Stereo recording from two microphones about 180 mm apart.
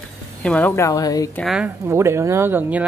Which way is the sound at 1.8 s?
15° right (ahead or behind).